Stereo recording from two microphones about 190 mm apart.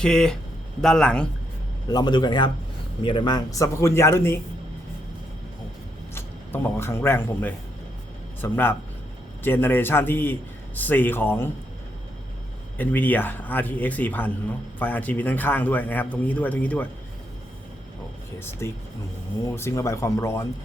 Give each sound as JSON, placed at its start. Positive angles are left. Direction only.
{"t": 0.0, "sound": "a man's voice", "side_deg": 5}
{"t": 1.9, "sound": "a man's voice", "side_deg": 20}
{"t": 6.1, "sound": "a man's voice", "side_deg": 10}
{"t": 12.7, "sound": "a man's voice", "side_deg": 10}
{"t": 18.3, "sound": "a man's voice", "side_deg": 10}